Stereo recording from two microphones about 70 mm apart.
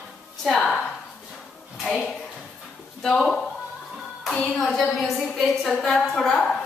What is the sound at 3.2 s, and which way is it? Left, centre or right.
A woman's voice, centre.